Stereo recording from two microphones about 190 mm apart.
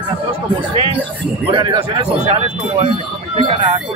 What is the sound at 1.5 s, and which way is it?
Speech, 25° right (ahead or behind).